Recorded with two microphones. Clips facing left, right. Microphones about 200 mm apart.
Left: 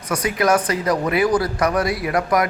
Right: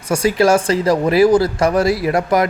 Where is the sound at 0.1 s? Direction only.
30° right (ahead or behind).